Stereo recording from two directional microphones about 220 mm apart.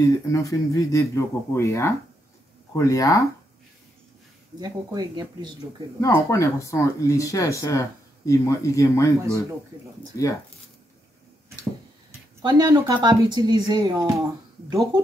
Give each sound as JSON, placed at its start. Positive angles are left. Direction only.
{"t": 0.0, "sound": "a man's voice", "side_deg": 15}
{"t": 4.6, "sound": "speech", "side_deg": -20}
{"t": 5.9, "sound": "a man's voice", "side_deg": 15}
{"t": 12.1, "sound": "speech", "side_deg": -15}